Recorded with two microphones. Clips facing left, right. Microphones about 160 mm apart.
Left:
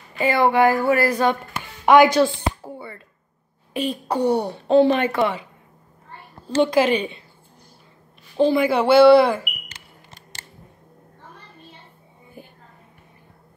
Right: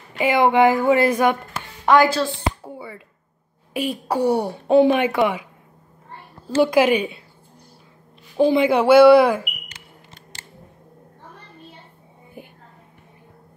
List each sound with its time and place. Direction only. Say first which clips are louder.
0.2 s speech: right 1 dB; 15° right (ahead or behind)
1.9 s speech: left 3 dB; 15° left (ahead or behind)
2.6 s a sound: even; 5° right (ahead or behind)
3.7 s speech: right 1 dB; 10° right (ahead or behind)
6.5 s speech: right 1 dB; 10° right (ahead or behind)
8.4 s speech: right 1 dB; 15° right (ahead or behind)
12.4 s whispering: right 2 dB; 15° right (ahead or behind)